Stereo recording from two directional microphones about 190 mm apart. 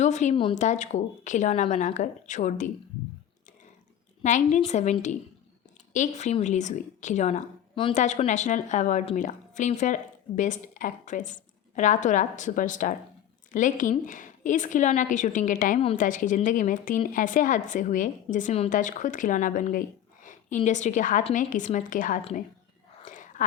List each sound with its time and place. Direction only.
0.0 s speech: 40° left (ahead or behind)
0.3 s a woman's voice: 25° left (ahead or behind)
0.6 s a woman's voice: 40° left (ahead or behind)
4.2 s a woman's voice: 40° left (ahead or behind)
22.2 s a woman's voice: 35° left (ahead or behind)
23.0 s whispering: 40° left (ahead or behind)